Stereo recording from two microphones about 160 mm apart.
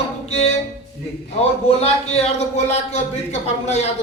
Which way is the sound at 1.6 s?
40° left (ahead or behind).